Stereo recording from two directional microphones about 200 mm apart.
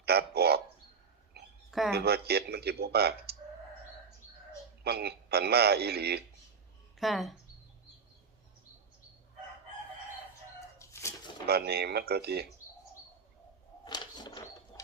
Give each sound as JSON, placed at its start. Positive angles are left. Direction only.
{"t": 0.0, "sound": "a man's voice", "side_deg": -50}
{"t": 1.4, "sound": "a sound", "side_deg": -55}
{"t": 1.9, "sound": "a man's voice", "side_deg": -55}
{"t": 4.8, "sound": "a man's voice", "side_deg": -55}
{"t": 7.0, "sound": "speech", "side_deg": 0}
{"t": 10.8, "sound": "chicken", "side_deg": 15}
{"t": 11.4, "sound": "a man's voice", "side_deg": -50}
{"t": 13.8, "sound": "a sound", "side_deg": 20}